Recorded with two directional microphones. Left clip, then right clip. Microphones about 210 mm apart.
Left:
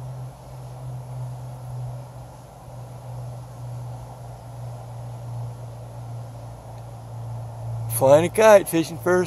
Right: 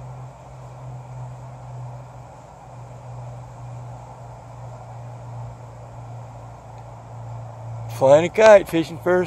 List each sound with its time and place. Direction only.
7.9 s speech: 5° left (ahead or behind)